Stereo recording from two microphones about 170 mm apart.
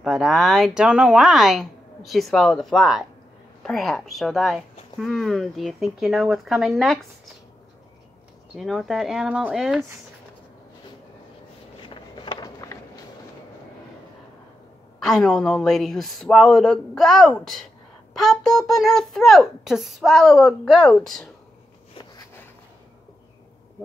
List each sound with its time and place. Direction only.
0.0 s a child's voice: centre (ahead or behind)
8.5 s a child's voice: centre (ahead or behind)
11.8 s a sound: 30° left (ahead or behind)
15.0 s a child's voice: centre (ahead or behind)